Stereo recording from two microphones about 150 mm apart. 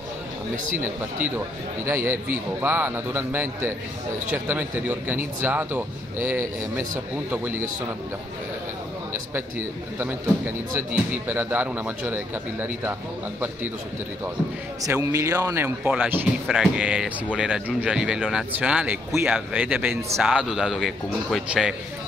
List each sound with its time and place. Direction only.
1.9 s speech: 15° right (ahead or behind)
9.3 s speech: 15° right (ahead or behind)
14.8 s a man's voice: 20° right (ahead or behind); by 21.7 s centre (ahead or behind)